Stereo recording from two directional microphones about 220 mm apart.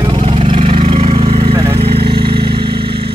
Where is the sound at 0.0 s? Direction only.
25° right (ahead or behind).